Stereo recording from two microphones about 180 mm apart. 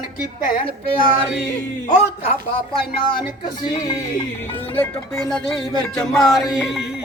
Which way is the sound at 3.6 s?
20° left (ahead or behind).